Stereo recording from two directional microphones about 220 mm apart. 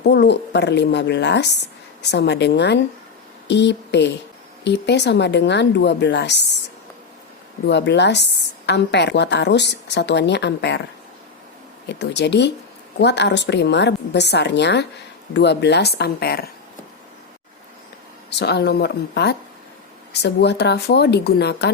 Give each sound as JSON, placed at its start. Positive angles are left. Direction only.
{"t": 0.0, "sound": "a woman's voice", "side_deg": 50}
{"t": 7.7, "sound": "a woman's voice", "side_deg": 50}
{"t": 11.9, "sound": "a woman's voice", "side_deg": 50}
{"t": 18.3, "sound": "a woman's voice", "side_deg": 50}